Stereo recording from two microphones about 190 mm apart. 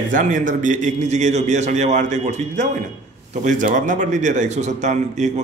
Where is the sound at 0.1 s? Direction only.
40° right (ahead or behind).